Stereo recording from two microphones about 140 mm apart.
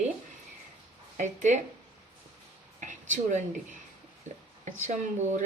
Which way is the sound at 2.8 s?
60° right (ahead or behind).